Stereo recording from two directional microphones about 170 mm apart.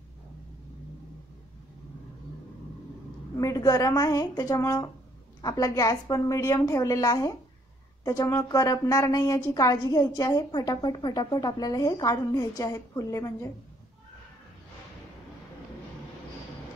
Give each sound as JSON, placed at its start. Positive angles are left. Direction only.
{"t": 3.3, "sound": "a woman's voice", "side_deg": 20}